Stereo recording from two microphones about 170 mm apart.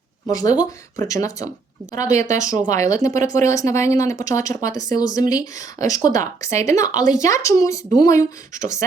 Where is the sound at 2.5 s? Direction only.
50° right (ahead or behind).